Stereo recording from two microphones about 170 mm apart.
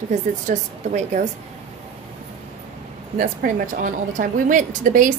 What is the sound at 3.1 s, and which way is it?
A woman's voice, 50° right (ahead or behind).